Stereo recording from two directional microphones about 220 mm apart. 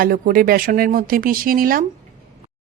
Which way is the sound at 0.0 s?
40° right (ahead or behind).